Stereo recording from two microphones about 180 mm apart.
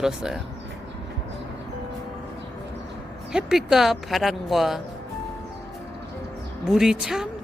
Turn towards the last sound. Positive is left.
turn(degrees=0)  # may be behind; listen again after turning